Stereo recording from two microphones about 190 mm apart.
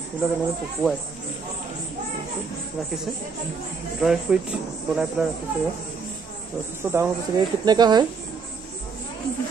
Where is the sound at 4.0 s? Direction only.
Centre (ahead or behind).